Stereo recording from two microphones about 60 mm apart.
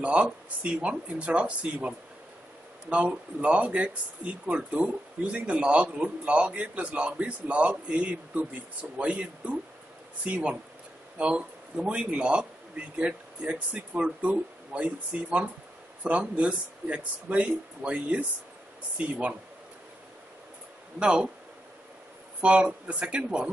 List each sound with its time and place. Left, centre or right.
0.0 s speech: right
21.0 s speech: centre
22.4 s speech: centre